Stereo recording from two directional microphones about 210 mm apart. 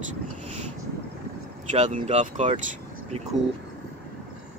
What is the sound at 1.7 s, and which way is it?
Speech, 35° right (ahead or behind).